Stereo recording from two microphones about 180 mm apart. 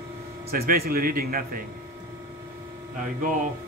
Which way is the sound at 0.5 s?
55° right (ahead or behind).